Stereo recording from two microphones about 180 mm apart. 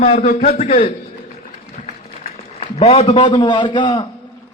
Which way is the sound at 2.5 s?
35° left (ahead or behind).